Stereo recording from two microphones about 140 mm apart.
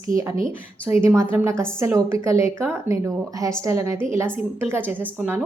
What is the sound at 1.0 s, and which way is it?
Speech, 20° right (ahead or behind).